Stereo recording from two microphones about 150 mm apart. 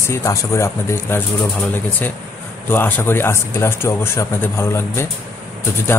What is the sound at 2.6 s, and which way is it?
Speech, 15° left (ahead or behind).